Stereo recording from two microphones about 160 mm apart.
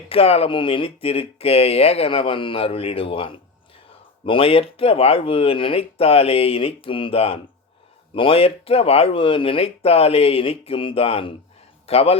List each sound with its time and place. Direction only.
0.1 s speech: 40° left (ahead or behind)